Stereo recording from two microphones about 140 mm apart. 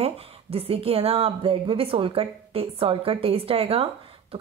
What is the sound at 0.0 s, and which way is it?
A woman's voice, 45° right (ahead or behind).